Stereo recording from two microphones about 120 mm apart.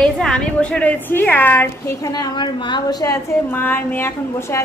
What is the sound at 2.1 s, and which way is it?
A woman's voice, 40° left (ahead or behind).